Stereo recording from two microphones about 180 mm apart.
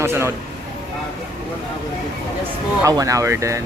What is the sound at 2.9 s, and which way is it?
Speech, 20° right (ahead or behind).